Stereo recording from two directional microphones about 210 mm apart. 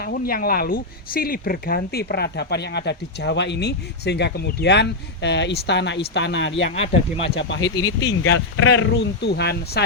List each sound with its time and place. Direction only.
0.0 s speech: 45° left (ahead or behind)
6.7 s speech: 30° left (ahead or behind)
7.3 s speech: 60° left (ahead or behind)
7.6 s speech: 20° left (ahead or behind)
8.2 s speech: 70° left (ahead or behind); by 9.8 s 50° left (ahead or behind)